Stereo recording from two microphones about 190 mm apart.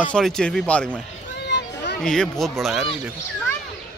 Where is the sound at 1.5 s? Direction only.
65° left (ahead or behind).